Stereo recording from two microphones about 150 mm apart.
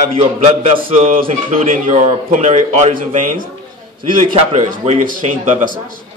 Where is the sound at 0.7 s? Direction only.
60° right (ahead or behind).